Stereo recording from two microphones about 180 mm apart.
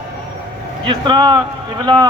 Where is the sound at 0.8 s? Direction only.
25° right (ahead or behind).